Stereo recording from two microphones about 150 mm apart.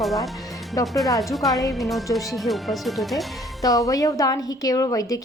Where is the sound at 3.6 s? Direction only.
25° left (ahead or behind).